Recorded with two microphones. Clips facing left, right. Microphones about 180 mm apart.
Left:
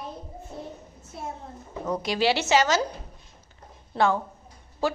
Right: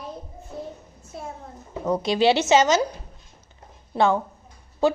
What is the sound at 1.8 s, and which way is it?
Speech, 25° right (ahead or behind).